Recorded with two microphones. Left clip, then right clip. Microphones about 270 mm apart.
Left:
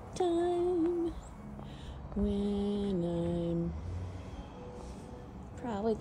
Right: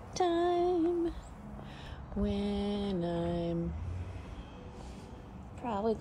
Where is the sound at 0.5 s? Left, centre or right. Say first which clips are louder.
Right 1 dB; centre.